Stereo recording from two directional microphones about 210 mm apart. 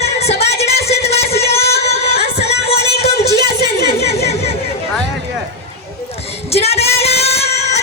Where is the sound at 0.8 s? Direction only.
30° left (ahead or behind).